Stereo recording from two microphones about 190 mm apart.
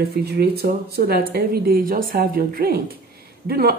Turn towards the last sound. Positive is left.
turn(degrees=-55)  # may be behind; listen again after turning